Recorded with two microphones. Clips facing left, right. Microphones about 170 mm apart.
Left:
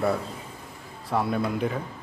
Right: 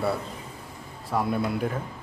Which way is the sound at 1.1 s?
5° right (ahead or behind).